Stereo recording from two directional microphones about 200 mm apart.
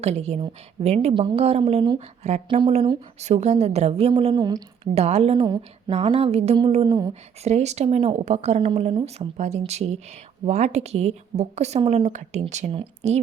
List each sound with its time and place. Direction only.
0.0 s a woman's voice: 30° right (ahead or behind)
7.1 s a woman's voice: 35° right (ahead or behind)